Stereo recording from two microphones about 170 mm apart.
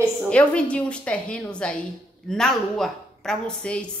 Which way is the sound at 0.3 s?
5° left (ahead or behind).